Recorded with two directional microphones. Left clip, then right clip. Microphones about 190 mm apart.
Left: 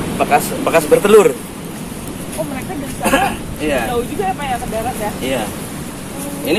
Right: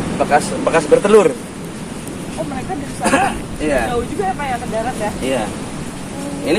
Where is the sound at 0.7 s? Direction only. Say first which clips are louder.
Left 1 dB; 40° left (ahead or behind).